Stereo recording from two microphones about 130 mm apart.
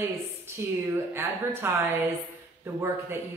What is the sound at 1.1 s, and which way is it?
A woman's voice, 15° right (ahead or behind).